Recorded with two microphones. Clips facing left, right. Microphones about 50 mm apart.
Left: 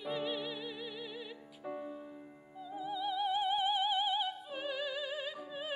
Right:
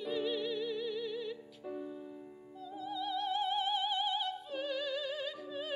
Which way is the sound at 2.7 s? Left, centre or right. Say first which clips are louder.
Left 1 dB; centre.